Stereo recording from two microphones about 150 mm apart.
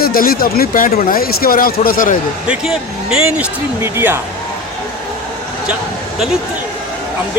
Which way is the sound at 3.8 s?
15° right (ahead or behind).